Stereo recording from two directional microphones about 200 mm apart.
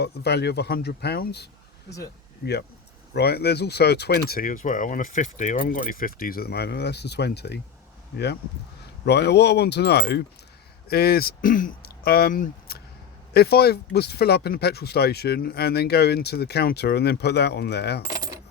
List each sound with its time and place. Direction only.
0.0 s speech: 55° left (ahead or behind)
9.0 s speech: 55° left (ahead or behind)